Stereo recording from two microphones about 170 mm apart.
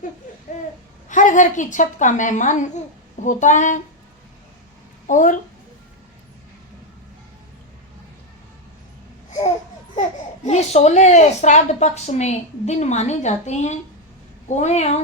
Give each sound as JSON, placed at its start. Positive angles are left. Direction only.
{"t": 0.5, "sound": "a sound", "side_deg": 40}
{"t": 1.0, "sound": "a woman's voice", "side_deg": 50}
{"t": 5.0, "sound": "a woman's voice", "side_deg": 50}
{"t": 10.4, "sound": "a woman's voice", "side_deg": 40}